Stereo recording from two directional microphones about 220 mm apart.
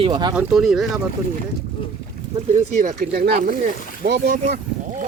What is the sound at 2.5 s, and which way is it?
Speech, 35° right (ahead or behind).